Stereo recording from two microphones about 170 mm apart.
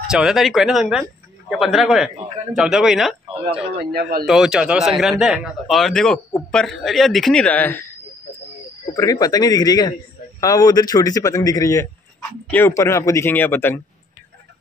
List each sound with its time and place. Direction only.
0.1 s speech: 5° right (ahead or behind)
3.7 s a man's voice: 65° right (ahead or behind)
4.3 s speech: 5° right (ahead or behind)
8.9 s a man's voice: 20° left (ahead or behind)